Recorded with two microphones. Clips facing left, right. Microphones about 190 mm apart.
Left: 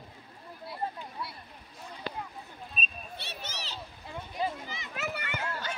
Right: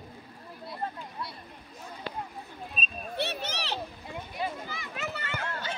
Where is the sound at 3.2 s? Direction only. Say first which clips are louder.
Right 11 dB; 65° right (ahead or behind).